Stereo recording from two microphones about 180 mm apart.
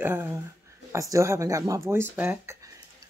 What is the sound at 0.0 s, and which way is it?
Speech, 15° right (ahead or behind).